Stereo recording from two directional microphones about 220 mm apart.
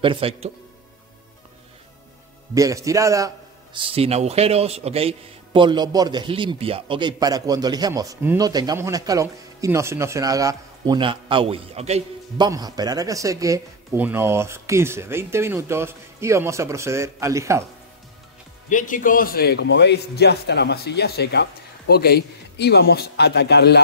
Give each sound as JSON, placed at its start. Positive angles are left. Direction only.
{"t": 0.0, "sound": "speech", "side_deg": -25}
{"t": 2.5, "sound": "a man's voice", "side_deg": -15}
{"t": 12.4, "sound": "a man's voice", "side_deg": -15}
{"t": 18.7, "sound": "a man's voice", "side_deg": 35}